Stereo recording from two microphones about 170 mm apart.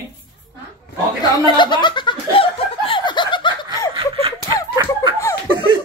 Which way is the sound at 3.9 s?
30° right (ahead or behind).